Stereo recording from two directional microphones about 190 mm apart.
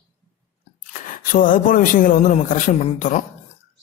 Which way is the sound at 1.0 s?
45° left (ahead or behind).